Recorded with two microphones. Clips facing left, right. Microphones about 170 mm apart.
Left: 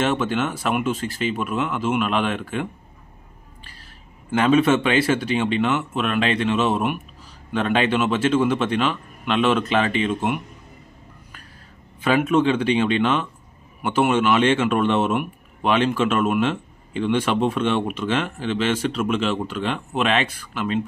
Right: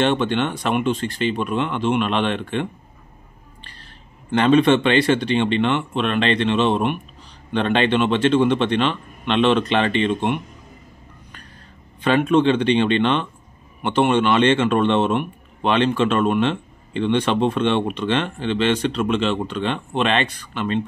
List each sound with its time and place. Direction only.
0.0 s a man's voice: 5° left (ahead or behind)
12.0 s a man's voice: 5° left (ahead or behind)